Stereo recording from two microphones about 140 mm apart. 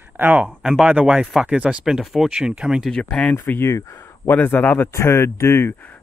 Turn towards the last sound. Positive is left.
turn(degrees=10)  # may be behind; listen again after turning